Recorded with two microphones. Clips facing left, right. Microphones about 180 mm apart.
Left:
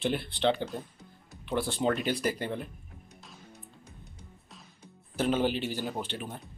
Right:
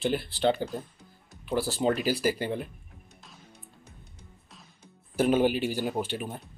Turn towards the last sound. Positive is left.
turn(degrees=-10)  # may be behind; listen again after turning